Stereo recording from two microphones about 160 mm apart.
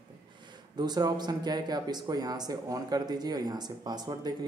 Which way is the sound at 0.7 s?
25° right (ahead or behind).